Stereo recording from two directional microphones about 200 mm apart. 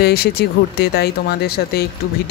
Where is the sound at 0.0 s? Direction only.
50° left (ahead or behind).